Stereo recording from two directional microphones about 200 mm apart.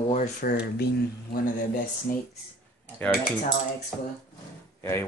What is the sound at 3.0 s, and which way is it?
Speech, 5° left (ahead or behind).